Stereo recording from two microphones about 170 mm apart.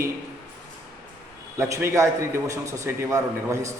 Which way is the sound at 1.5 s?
15° right (ahead or behind).